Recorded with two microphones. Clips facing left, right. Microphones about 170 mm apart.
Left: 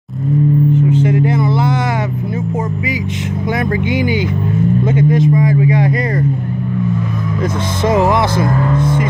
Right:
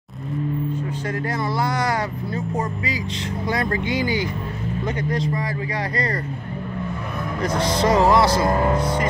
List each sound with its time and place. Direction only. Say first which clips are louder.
0.9 s a sound: left 11 dB; 20° left (ahead or behind)
3.5 s speech: left 6 dB; 20° left (ahead or behind)
7.9 s music: left 4 dB; 20° left (ahead or behind)
8.5 s speech: left 3 dB; 25° right (ahead or behind)